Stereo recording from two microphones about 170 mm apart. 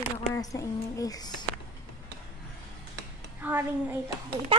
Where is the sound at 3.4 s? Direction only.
10° right (ahead or behind).